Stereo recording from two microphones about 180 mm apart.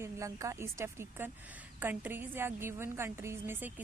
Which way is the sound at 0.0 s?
15° right (ahead or behind).